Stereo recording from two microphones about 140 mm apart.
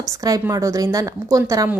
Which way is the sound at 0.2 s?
25° right (ahead or behind).